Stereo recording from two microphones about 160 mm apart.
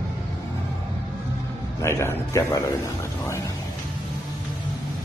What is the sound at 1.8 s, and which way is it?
Speech, 15° left (ahead or behind).